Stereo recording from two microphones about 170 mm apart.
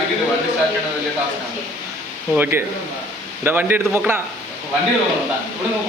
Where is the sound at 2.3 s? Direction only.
10° right (ahead or behind).